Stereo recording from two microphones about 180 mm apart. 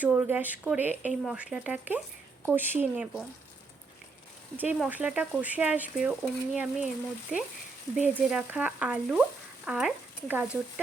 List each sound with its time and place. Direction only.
0.0 s speech: 10° right (ahead or behind)
4.5 s speech: 10° right (ahead or behind)